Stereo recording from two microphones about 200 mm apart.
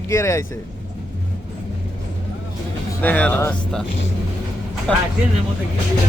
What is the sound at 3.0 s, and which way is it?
Speech, 10° left (ahead or behind).